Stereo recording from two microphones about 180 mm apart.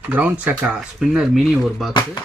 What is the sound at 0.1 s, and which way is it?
Speech, 10° right (ahead or behind).